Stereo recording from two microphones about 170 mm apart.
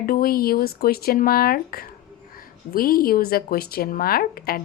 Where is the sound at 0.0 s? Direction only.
60° left (ahead or behind).